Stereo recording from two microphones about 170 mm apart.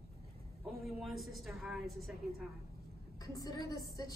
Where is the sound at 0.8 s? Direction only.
Centre (ahead or behind).